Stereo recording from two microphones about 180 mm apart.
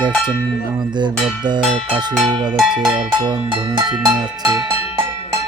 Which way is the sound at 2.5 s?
Centre (ahead or behind).